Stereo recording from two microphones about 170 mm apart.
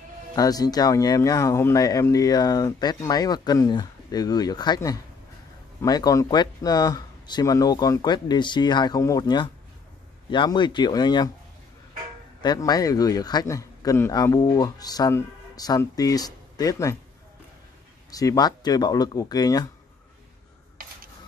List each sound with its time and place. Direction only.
0.4 s speech: 20° left (ahead or behind)
12.4 s speech: 25° left (ahead or behind)
18.1 s speech: 20° left (ahead or behind)